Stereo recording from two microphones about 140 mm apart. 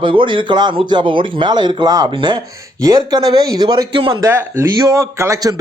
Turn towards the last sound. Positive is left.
turn(degrees=-25)  # may be behind; listen again after turning